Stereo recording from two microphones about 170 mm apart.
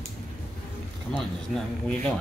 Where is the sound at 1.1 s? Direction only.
5° left (ahead or behind).